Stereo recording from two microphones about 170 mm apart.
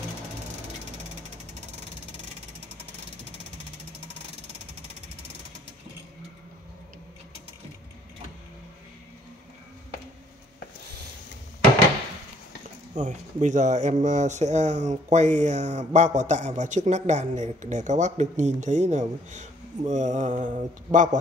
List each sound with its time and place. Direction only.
12.9 s speech: 45° right (ahead or behind)